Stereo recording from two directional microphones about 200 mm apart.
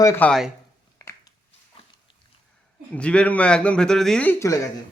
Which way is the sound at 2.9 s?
5° left (ahead or behind).